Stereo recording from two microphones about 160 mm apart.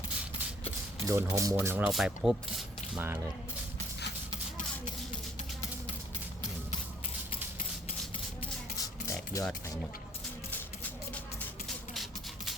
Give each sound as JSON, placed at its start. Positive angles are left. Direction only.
{"t": 1.0, "sound": "speech", "side_deg": -20}
{"t": 8.8, "sound": "a sound", "side_deg": 20}
{"t": 10.5, "sound": "music", "side_deg": 10}